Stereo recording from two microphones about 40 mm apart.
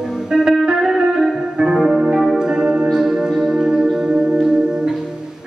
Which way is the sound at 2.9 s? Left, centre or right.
Centre.